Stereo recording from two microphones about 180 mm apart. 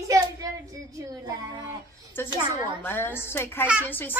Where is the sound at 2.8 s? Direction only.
10° left (ahead or behind).